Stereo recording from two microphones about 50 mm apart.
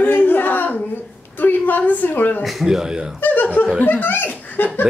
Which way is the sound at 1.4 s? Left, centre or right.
Left.